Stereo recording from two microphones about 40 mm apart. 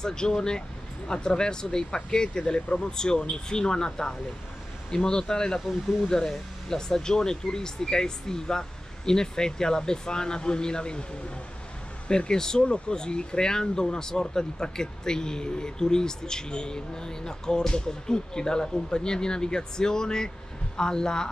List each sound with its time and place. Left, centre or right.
0.0 s speech: centre
12.1 s speech: centre
12.6 s speech: left